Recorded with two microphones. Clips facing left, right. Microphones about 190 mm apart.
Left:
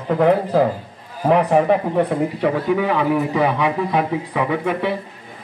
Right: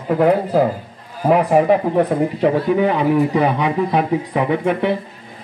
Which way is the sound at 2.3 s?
30° right (ahead or behind).